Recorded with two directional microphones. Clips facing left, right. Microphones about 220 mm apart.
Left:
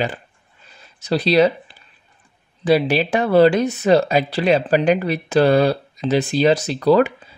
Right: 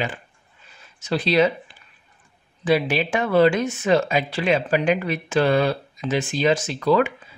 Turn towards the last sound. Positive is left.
turn(degrees=35)  # may be behind; listen again after turning